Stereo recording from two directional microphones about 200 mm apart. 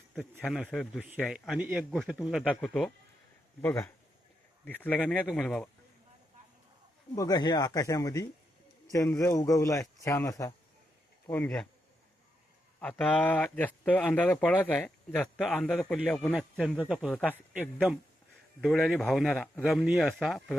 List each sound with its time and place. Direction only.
0.1 s a man's voice: centre (ahead or behind)
7.2 s speech: 20° left (ahead or behind)
12.8 s a man's voice: 5° left (ahead or behind)